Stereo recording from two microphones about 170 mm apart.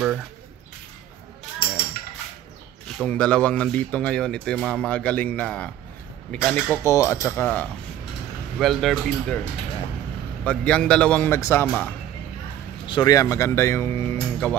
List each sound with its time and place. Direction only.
3.0 s speech: 5° left (ahead or behind)
10.4 s speech: 5° left (ahead or behind)
12.8 s speech: 25° left (ahead or behind)